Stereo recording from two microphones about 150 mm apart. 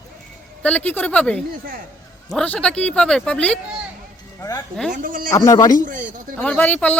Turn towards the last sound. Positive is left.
turn(degrees=10)  # may be behind; listen again after turning